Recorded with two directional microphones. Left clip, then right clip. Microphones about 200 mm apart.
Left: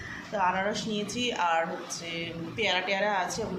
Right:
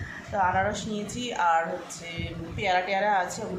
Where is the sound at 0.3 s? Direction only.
15° right (ahead or behind).